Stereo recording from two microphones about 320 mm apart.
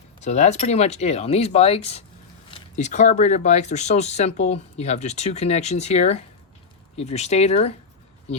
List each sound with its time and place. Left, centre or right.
0.2 s speech: left